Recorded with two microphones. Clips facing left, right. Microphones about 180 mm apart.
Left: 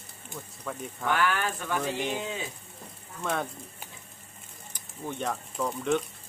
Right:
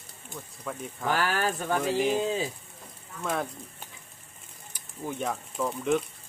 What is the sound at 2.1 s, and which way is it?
Speech, 35° right (ahead or behind).